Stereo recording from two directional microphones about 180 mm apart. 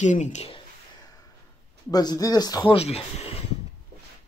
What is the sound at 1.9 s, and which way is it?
Speech, 20° left (ahead or behind).